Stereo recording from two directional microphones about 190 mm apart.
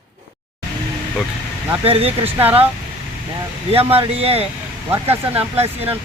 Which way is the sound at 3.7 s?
30° right (ahead or behind).